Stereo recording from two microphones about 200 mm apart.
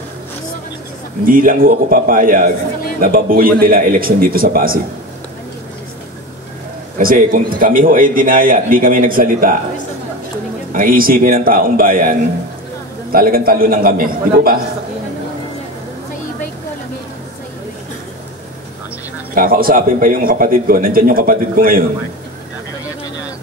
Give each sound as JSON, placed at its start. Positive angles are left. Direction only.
{"t": 1.2, "sound": "a man's voice", "side_deg": -45}
{"t": 7.0, "sound": "a man's voice", "side_deg": -45}
{"t": 10.7, "sound": "a man's voice", "side_deg": -45}
{"t": 19.3, "sound": "a man's voice", "side_deg": -45}